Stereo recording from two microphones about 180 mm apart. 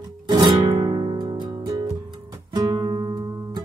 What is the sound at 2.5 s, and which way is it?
Guitar, 25° right (ahead or behind).